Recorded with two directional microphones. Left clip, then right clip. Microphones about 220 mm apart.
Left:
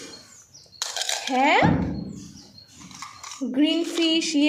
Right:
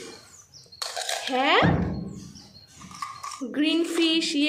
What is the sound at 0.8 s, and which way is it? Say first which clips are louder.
Dishes: left 2 dB; 5° right (ahead or behind).